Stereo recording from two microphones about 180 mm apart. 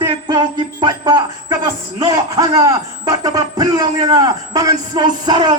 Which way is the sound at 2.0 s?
20° right (ahead or behind).